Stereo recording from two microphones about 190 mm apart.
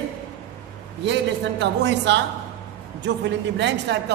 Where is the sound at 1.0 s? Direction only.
65° right (ahead or behind).